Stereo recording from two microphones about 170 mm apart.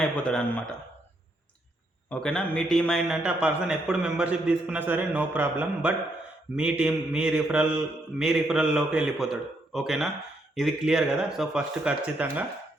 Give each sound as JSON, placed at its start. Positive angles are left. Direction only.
{"t": 0.0, "sound": "a man's voice", "side_deg": 5}
{"t": 2.0, "sound": "a man's voice", "side_deg": 5}